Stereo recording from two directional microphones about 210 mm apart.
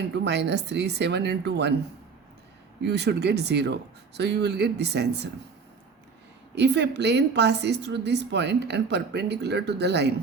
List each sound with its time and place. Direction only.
0.1 s a woman's voice: 55° right (ahead or behind)
2.8 s a woman's voice: 55° right (ahead or behind)
6.6 s a woman's voice: 55° right (ahead or behind)